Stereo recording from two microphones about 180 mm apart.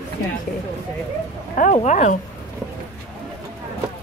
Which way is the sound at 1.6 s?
40° left (ahead or behind).